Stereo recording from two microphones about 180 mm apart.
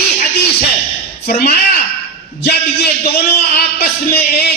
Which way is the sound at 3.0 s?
65° left (ahead or behind).